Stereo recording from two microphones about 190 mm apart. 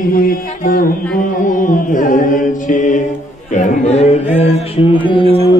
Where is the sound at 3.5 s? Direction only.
40° left (ahead or behind).